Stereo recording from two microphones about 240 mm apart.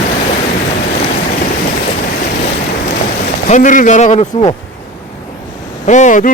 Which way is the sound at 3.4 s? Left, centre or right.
Left.